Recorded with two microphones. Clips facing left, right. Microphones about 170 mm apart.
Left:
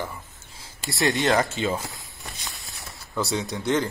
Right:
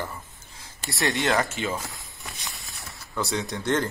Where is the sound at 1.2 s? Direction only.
20° left (ahead or behind).